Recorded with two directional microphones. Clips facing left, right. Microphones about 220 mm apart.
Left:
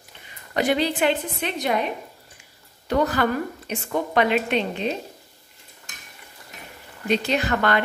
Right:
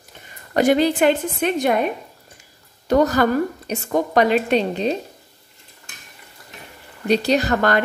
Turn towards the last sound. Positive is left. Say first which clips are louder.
# right 4 dB
turn(degrees=-40)  # may be behind; listen again after turning